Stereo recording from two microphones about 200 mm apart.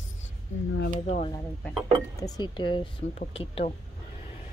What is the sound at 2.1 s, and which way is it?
Speech, 20° left (ahead or behind).